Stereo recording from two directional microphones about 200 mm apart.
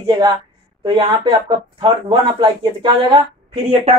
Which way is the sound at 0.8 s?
25° right (ahead or behind).